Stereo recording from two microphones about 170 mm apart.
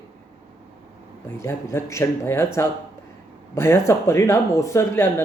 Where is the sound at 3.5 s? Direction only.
15° left (ahead or behind).